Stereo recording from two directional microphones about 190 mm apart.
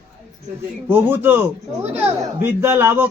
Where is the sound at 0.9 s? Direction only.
10° right (ahead or behind).